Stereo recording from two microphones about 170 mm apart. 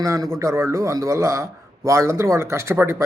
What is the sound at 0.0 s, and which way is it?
Speech, 20° right (ahead or behind).